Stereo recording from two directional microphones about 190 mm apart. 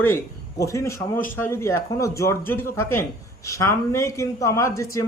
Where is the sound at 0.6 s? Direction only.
15° left (ahead or behind).